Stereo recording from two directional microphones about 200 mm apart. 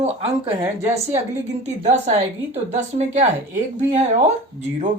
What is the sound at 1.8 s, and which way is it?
A woman's voice, 35° right (ahead or behind).